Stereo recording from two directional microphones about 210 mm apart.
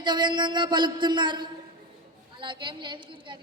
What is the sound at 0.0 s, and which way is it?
A woman's voice, 20° right (ahead or behind).